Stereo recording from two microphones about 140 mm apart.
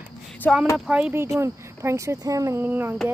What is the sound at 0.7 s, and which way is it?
Speech, 10° right (ahead or behind).